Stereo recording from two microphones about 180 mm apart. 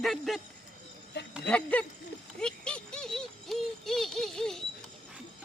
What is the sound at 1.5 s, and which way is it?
Speech, 5° left (ahead or behind).